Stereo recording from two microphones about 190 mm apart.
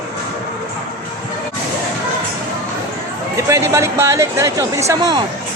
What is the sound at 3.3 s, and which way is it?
Speech, 15° right (ahead or behind).